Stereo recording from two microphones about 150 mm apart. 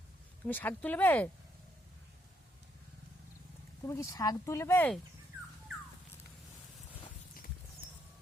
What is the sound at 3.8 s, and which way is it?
Speech, 20° left (ahead or behind).